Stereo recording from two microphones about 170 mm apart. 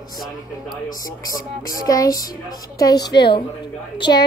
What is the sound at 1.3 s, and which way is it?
A woman's voice, 20° left (ahead or behind).